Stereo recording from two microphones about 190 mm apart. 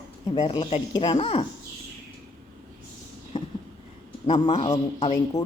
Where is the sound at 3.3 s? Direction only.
25° left (ahead or behind).